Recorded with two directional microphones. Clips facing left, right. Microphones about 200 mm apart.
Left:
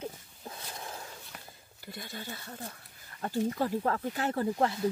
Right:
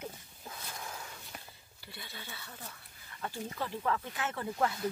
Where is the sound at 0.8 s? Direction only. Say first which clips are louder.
Left 1 dB; 30° left (ahead or behind).